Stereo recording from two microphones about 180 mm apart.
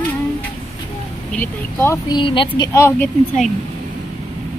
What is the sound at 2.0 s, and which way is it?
A woman's voice, 25° left (ahead or behind).